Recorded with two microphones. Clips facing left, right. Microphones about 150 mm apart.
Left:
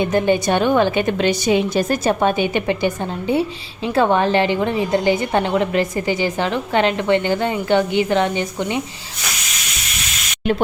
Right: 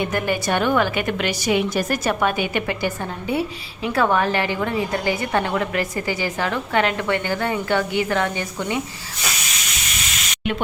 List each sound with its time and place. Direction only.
0.0 s a woman's voice: 25° left (ahead or behind)